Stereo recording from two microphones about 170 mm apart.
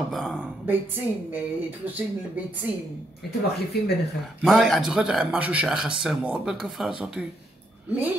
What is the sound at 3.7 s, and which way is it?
Speech, 70° left (ahead or behind).